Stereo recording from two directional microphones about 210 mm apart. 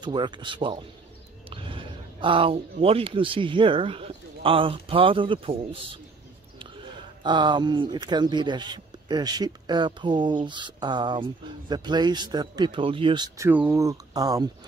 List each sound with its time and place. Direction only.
0.0 s speech: 20° right (ahead or behind)
7.2 s speech: 20° right (ahead or behind)
13.5 s speech: 10° right (ahead or behind)